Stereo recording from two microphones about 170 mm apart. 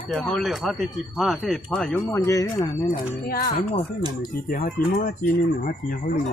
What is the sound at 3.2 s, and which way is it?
Speech, 60° left (ahead or behind).